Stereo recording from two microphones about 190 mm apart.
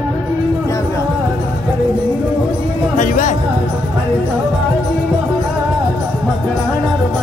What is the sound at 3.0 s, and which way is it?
Music, 40° left (ahead or behind).